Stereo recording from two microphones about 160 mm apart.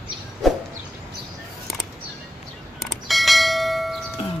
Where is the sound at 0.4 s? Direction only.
Centre (ahead or behind).